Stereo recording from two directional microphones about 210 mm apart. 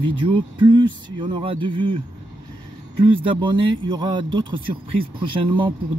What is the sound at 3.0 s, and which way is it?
Speech, 25° right (ahead or behind).